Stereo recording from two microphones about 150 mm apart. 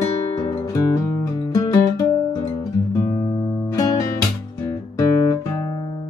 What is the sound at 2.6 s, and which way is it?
Guitar, 25° left (ahead or behind).